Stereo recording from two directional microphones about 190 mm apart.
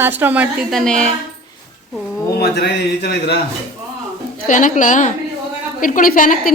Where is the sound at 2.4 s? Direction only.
60° left (ahead or behind).